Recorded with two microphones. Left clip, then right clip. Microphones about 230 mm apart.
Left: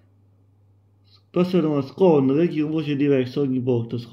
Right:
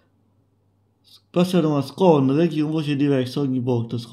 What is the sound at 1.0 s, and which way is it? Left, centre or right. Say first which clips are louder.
Speech: right 1 dB; right.